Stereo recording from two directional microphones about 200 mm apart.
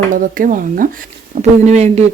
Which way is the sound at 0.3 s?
45° right (ahead or behind).